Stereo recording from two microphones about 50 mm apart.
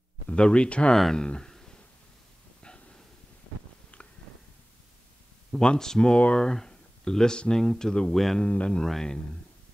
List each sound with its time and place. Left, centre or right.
0.3 s speech: left
1.5 s a sound: centre
5.6 s speech: centre
8.1 s speech: centre
8.4 s speech: left
8.8 s speech: centre